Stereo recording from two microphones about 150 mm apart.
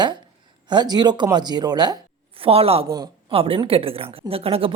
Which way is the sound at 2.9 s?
25° right (ahead or behind).